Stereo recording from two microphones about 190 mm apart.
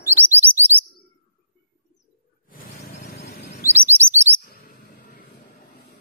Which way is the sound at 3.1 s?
55° left (ahead or behind).